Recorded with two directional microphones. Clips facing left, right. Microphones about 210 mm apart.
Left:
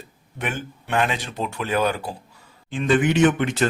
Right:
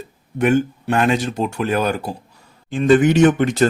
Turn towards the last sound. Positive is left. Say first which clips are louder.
# right 5 dB
turn(degrees=-40)  # may be behind; listen again after turning